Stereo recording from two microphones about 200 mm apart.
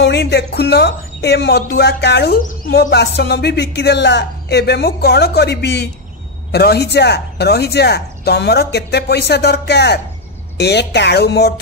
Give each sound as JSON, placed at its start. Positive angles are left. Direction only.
{"t": 0.0, "sound": "speech", "side_deg": 60}